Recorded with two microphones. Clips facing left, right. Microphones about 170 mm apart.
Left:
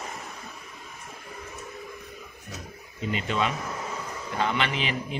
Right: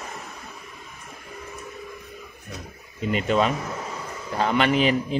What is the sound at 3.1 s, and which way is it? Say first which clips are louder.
A man's voice: right 6 dB; 45° right (ahead or behind).